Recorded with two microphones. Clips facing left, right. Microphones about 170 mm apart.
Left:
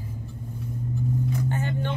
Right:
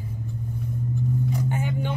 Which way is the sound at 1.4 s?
15° right (ahead or behind).